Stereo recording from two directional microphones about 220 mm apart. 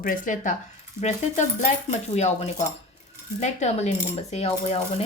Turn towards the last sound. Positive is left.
turn(degrees=30)  # may be behind; listen again after turning